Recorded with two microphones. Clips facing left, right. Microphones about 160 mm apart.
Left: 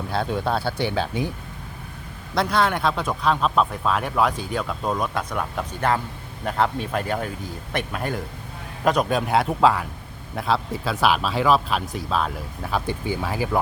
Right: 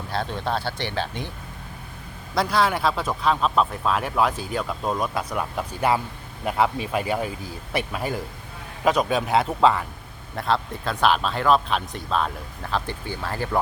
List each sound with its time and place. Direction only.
0.1 s speech: 5° left (ahead or behind)
2.3 s speech: centre (ahead or behind)